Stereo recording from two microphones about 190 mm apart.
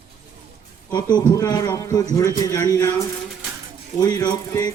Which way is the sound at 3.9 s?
20° left (ahead or behind).